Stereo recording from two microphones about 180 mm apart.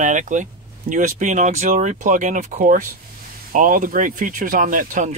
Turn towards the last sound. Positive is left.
turn(degrees=-50)  # may be behind; listen again after turning